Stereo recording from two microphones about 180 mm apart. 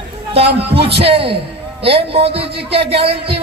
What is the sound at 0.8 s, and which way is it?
A man's voice, 30° right (ahead or behind).